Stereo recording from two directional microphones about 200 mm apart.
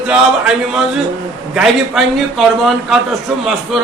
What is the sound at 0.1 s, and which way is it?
A man's voice, 5° right (ahead or behind).